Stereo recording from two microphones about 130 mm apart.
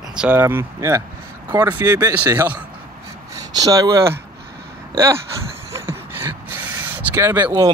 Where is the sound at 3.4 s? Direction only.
30° right (ahead or behind).